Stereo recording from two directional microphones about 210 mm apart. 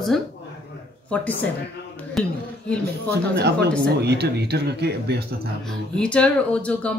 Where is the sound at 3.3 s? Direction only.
55° right (ahead or behind).